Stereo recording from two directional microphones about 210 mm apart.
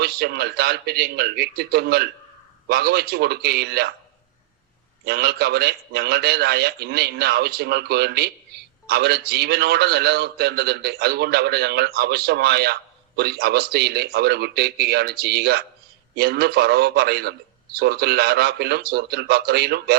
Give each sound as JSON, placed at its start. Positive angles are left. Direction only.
{"t": 0.0, "sound": "a man's voice", "side_deg": -50}
{"t": 5.0, "sound": "a man's voice", "side_deg": -50}